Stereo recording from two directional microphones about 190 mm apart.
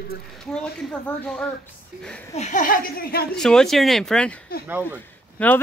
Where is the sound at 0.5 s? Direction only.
5° left (ahead or behind).